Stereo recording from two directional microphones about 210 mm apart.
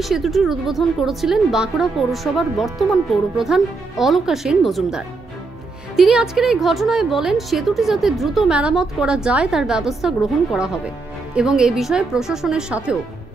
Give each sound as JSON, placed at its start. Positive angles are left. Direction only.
{"t": 0.0, "sound": "a woman's voice", "side_deg": 0}